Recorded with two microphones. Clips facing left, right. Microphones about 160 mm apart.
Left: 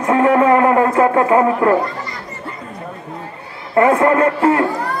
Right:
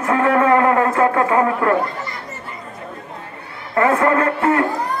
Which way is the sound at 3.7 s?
25° left (ahead or behind).